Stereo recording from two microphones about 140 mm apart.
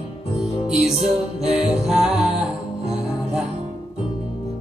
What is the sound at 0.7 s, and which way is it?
Music, 5° right (ahead or behind).